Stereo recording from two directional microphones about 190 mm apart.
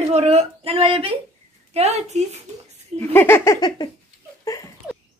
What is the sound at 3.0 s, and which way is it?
Giggle, 10° left (ahead or behind).